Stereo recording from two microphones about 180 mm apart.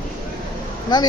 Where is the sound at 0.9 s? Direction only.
25° left (ahead or behind).